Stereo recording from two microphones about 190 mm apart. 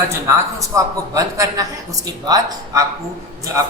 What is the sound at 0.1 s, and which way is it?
A man's voice, 15° right (ahead or behind).